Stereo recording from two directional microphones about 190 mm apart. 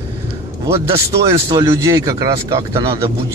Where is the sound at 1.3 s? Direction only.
20° right (ahead or behind).